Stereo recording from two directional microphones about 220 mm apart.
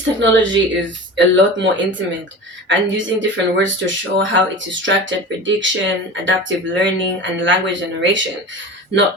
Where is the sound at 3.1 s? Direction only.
55° right (ahead or behind).